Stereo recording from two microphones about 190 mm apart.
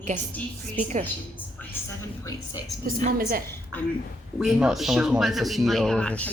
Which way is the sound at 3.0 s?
50° right (ahead or behind).